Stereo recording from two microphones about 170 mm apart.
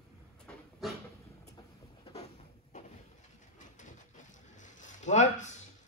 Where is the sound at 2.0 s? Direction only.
40° left (ahead or behind).